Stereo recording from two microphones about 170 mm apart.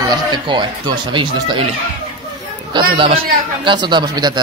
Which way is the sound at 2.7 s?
30° right (ahead or behind).